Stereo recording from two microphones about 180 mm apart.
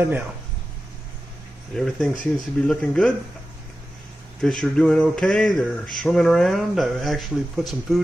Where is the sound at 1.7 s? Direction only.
Centre (ahead or behind).